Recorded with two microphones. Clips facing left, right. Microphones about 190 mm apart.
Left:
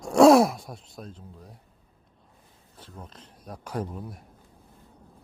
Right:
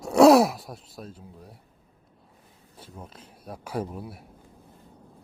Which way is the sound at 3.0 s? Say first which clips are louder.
Right 1 dB; 10° right (ahead or behind).